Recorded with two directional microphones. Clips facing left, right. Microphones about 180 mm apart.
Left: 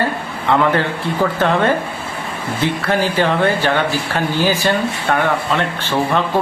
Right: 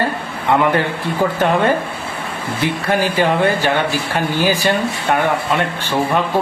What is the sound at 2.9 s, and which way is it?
Speech, 15° right (ahead or behind).